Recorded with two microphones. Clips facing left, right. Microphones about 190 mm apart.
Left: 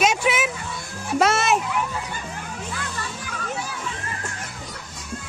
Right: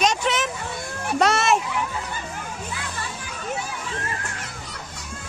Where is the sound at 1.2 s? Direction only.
Centre (ahead or behind).